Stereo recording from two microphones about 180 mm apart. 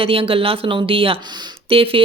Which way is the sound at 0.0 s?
30° right (ahead or behind).